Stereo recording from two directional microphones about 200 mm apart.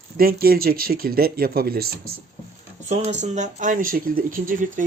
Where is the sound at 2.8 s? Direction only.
35° right (ahead or behind).